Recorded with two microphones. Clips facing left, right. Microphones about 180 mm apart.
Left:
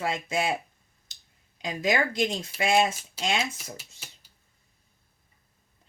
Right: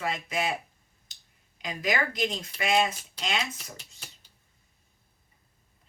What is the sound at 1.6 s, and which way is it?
Speech, 25° left (ahead or behind).